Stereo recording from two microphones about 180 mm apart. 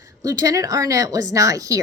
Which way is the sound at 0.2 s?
20° right (ahead or behind).